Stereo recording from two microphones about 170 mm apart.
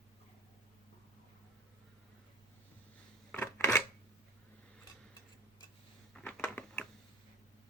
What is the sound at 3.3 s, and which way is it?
Scissors, 15° left (ahead or behind).